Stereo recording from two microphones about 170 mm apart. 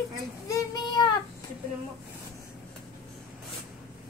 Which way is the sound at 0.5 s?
25° left (ahead or behind).